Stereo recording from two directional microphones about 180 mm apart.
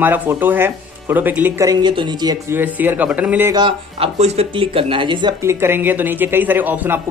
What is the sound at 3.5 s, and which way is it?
Speech, 30° right (ahead or behind).